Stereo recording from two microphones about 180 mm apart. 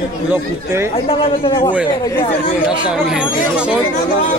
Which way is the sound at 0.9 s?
30° left (ahead or behind).